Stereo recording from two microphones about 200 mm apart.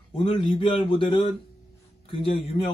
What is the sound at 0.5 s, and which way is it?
Speech, 25° left (ahead or behind).